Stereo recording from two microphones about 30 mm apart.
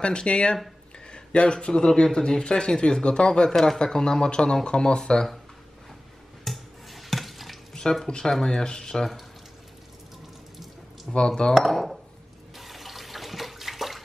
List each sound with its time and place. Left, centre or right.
0.0 s a man's voice: left
3.4 s speech: centre
6.4 s a sound: centre
7.8 s speech: left
8.3 s speech: centre
8.5 s speech: left
11.1 s speech: left
11.7 s a sound: centre
12.5 s water: centre